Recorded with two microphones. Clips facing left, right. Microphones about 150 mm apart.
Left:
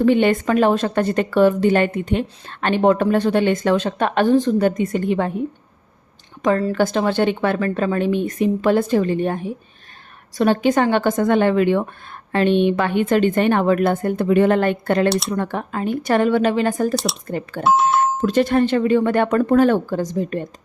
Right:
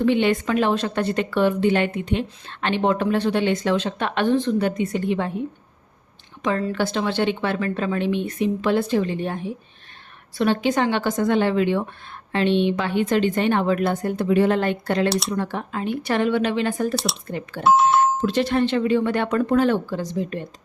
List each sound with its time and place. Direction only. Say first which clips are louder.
0.0 s speech: left 4 dB; 50° left (ahead or behind)
6.4 s speech: left 5 dB; 40° left (ahead or behind)
16.9 s speech: left 3 dB; centre (ahead or behind)
17.2 s speech: left 4 dB; 45° left (ahead or behind)
17.6 s speech: even; centre (ahead or behind)
18.2 s speech: left 4 dB; 45° left (ahead or behind)